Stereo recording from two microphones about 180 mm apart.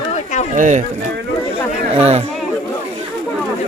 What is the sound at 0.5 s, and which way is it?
Speech, 45° right (ahead or behind).